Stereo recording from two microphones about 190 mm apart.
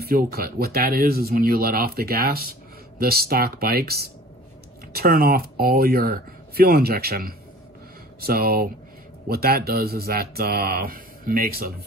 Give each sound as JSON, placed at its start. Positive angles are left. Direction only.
{"t": 0.0, "sound": "speech", "side_deg": -55}